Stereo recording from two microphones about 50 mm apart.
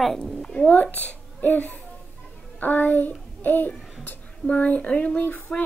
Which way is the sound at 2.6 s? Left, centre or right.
Left.